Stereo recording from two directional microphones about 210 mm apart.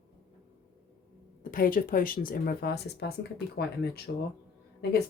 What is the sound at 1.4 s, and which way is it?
Speech, 40° left (ahead or behind).